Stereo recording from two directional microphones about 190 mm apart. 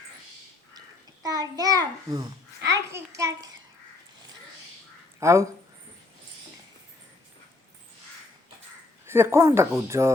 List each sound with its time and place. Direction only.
0.7 s a sound: 20° right (ahead or behind)
5.2 s speech: 15° right (ahead or behind)
9.0 s speech: 15° right (ahead or behind)